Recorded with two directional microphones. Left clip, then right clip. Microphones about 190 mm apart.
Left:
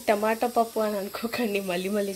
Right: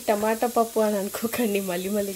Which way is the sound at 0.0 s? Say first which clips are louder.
Right 1 dB; 5° right (ahead or behind).